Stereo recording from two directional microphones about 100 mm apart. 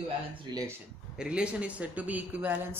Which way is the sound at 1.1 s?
10° right (ahead or behind).